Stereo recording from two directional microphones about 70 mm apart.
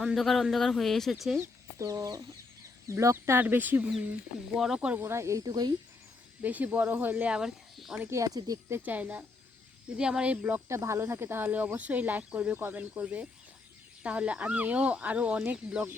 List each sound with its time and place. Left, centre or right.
0.0 s a man's voice: centre
1.8 s speech: right
3.4 s speech: right
4.5 s speech: centre
4.9 s speech: right
5.5 s speech: right
6.4 s speech: right
7.3 s speech: centre
8.0 s speech: right
8.3 s speech: right
8.8 s speech: right
10.0 s speech: centre
10.7 s speech: right; by 15.8 s centre